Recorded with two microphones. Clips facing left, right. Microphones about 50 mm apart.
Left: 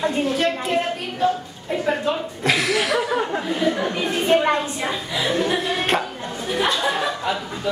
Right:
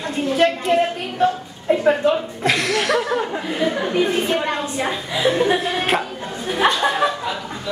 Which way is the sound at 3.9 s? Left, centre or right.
Right.